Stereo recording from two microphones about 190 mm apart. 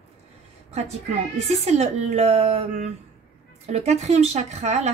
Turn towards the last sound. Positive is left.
turn(degrees=-35)  # may be behind; listen again after turning